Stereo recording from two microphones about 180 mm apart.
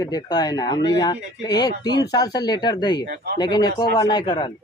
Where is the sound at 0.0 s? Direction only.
20° left (ahead or behind).